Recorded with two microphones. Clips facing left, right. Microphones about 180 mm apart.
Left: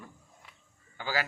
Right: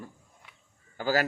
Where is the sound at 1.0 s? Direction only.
45° right (ahead or behind).